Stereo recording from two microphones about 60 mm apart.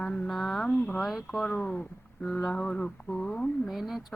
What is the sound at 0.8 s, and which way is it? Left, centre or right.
Speech, left.